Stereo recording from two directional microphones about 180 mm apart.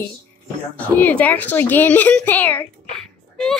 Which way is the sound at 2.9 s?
5° left (ahead or behind).